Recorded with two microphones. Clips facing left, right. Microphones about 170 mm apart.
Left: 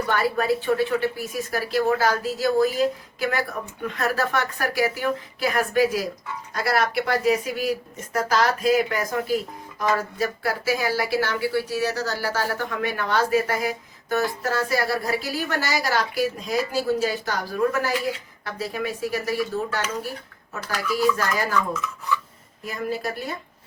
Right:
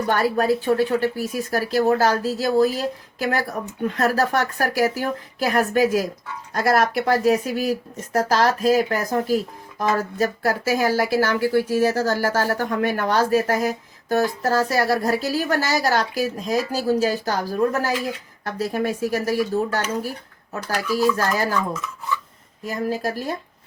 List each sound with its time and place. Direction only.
0.1 s speech: 40° right (ahead or behind)
22.6 s speech: 40° right (ahead or behind)